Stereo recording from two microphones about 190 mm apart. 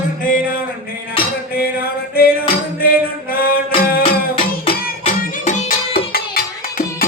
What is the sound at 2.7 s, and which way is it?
Music, 50° left (ahead or behind).